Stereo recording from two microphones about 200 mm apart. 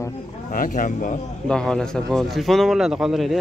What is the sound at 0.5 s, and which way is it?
Speech, 40° left (ahead or behind).